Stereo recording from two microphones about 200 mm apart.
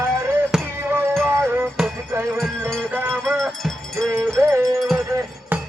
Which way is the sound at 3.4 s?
Centre (ahead or behind).